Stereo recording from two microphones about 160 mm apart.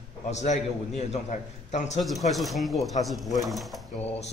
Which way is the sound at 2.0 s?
Centre (ahead or behind).